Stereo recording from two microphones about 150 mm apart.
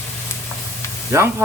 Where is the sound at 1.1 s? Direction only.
20° right (ahead or behind).